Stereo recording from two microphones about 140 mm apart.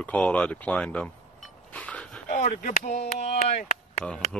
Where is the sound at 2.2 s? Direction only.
65° left (ahead or behind).